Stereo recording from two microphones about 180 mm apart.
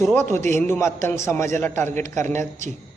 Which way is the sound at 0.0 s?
15° left (ahead or behind).